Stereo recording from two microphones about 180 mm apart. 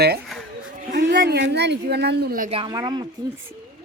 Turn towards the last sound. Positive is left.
turn(degrees=-25)  # may be behind; listen again after turning